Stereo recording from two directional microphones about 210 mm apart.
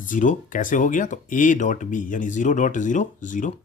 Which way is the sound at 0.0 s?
40° left (ahead or behind).